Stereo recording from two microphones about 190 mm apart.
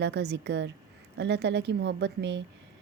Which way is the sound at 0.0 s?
60° right (ahead or behind).